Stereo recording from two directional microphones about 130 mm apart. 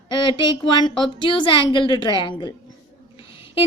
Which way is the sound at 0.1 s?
40° left (ahead or behind).